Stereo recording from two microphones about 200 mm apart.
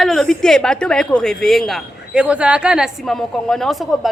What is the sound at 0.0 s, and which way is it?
Speech, centre (ahead or behind).